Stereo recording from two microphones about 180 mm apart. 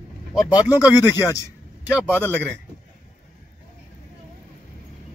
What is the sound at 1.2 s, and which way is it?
Speech, 20° left (ahead or behind).